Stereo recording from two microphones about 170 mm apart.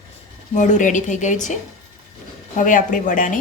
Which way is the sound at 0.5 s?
45° left (ahead or behind).